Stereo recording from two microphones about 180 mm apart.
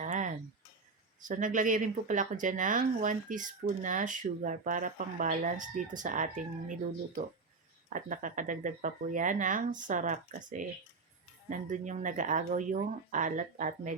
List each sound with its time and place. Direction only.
0.0 s a sound: 45° right (ahead or behind)
1.2 s speech: 45° right (ahead or behind)
7.9 s speech: 45° right (ahead or behind)